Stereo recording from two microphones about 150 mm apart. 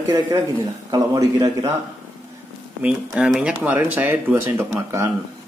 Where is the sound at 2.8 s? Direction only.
5° right (ahead or behind).